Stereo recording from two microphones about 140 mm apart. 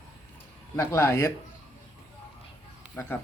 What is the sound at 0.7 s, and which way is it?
Speech, 20° left (ahead or behind).